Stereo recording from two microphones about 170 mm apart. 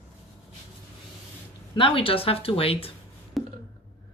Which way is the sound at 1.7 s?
30° left (ahead or behind).